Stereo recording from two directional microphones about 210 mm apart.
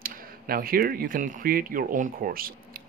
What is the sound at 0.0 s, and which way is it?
Speech, 45° right (ahead or behind).